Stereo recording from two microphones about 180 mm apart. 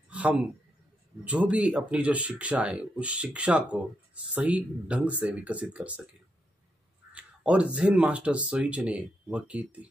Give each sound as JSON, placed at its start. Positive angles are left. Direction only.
{"t": 0.1, "sound": "a sound", "side_deg": -10}
{"t": 1.2, "sound": "speech", "side_deg": -5}
{"t": 7.1, "sound": "speech", "side_deg": -5}